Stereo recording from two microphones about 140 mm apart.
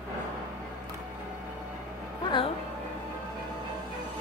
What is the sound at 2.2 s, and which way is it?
Speech, 35° left (ahead or behind).